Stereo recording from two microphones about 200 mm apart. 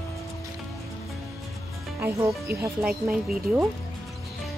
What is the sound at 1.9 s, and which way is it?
Speech, 10° right (ahead or behind).